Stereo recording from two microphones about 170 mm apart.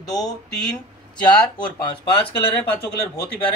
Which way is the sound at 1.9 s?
30° left (ahead or behind).